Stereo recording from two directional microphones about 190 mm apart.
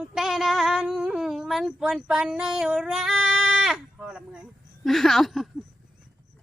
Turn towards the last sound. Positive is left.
turn(degrees=0)  # may be behind; listen again after turning